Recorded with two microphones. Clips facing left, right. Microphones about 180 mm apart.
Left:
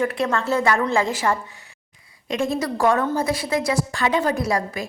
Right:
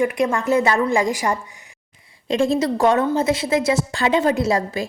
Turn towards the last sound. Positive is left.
turn(degrees=-25)  # may be behind; listen again after turning